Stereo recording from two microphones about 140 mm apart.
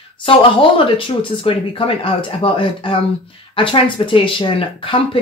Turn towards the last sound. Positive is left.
turn(degrees=35)  # may be behind; listen again after turning